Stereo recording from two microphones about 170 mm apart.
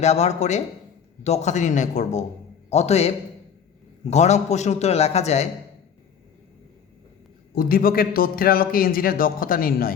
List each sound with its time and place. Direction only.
0.0 s a man's voice: 40° left (ahead or behind)
7.5 s a man's voice: 60° left (ahead or behind)